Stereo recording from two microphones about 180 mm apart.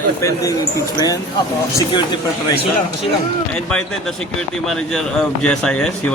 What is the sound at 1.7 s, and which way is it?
Speech, 25° left (ahead or behind).